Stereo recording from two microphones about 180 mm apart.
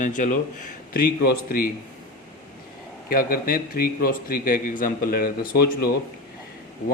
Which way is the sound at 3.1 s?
55° left (ahead or behind).